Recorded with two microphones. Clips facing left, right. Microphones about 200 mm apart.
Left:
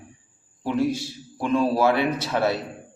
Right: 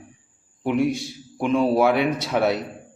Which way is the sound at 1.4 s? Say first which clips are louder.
Right 2 dB; 20° right (ahead or behind).